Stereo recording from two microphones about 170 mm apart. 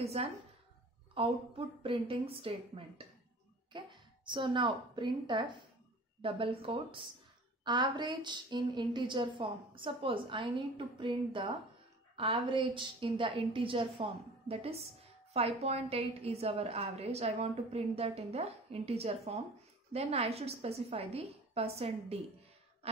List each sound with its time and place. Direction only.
0.0 s a woman's voice: 35° right (ahead or behind)